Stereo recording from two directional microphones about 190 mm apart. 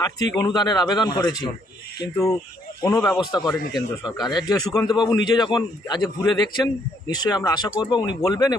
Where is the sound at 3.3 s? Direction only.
20° left (ahead or behind).